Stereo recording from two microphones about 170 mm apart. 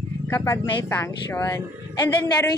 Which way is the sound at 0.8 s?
15° left (ahead or behind).